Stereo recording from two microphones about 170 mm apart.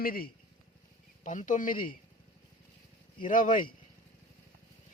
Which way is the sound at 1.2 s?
50° left (ahead or behind).